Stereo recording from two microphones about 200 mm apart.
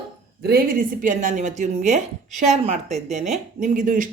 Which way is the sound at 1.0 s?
40° right (ahead or behind).